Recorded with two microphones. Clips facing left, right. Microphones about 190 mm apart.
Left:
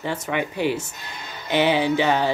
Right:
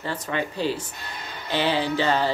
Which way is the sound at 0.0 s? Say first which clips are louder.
Left 3 dB; 15° left (ahead or behind).